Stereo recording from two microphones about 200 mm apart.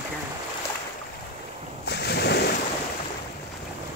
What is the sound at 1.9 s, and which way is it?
Ocean, 55° left (ahead or behind).